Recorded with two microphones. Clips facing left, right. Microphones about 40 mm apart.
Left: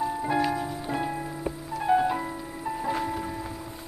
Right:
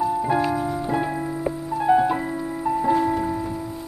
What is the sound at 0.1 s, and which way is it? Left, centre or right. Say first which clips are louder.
Music: right 5 dB; centre.